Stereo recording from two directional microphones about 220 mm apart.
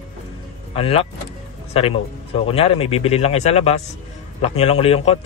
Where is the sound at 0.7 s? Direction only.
25° left (ahead or behind).